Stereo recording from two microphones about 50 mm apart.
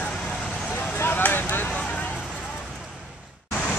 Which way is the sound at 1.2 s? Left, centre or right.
Left.